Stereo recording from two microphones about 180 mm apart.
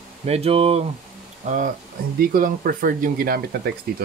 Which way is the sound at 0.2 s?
35° right (ahead or behind).